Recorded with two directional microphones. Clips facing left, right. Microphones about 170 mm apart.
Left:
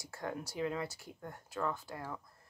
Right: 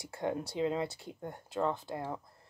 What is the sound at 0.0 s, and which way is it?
Speech, 25° right (ahead or behind).